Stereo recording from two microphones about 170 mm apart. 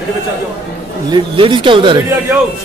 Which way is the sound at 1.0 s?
25° right (ahead or behind).